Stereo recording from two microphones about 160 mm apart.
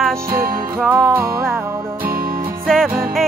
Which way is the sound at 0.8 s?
5° right (ahead or behind).